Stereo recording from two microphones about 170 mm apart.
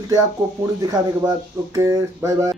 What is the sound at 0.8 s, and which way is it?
Speech, 20° right (ahead or behind).